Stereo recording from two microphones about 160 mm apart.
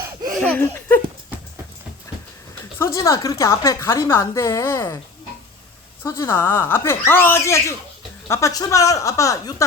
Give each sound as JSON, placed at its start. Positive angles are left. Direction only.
{"t": 0.3, "sound": "a sound", "side_deg": 5}
{"t": 2.7, "sound": "a woman's voice", "side_deg": 20}
{"t": 6.0, "sound": "a woman's voice", "side_deg": 15}